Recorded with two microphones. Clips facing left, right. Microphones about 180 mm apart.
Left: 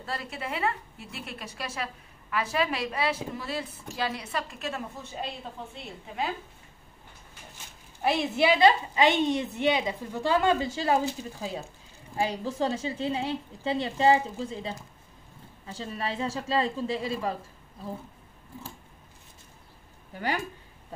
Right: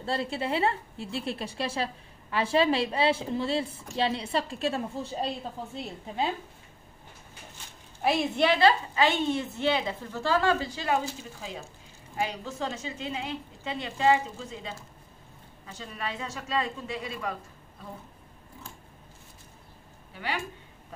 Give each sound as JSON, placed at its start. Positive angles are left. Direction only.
{"t": 0.0, "sound": "a woman's voice", "side_deg": -30}
{"t": 8.0, "sound": "a woman's voice", "side_deg": 0}
{"t": 8.5, "sound": "a woman's voice", "side_deg": 15}
{"t": 12.2, "sound": "a woman's voice", "side_deg": 30}
{"t": 20.2, "sound": "a woman's voice", "side_deg": 40}